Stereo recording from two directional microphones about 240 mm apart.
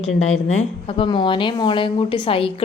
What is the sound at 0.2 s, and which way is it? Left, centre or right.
A woman's voice, left.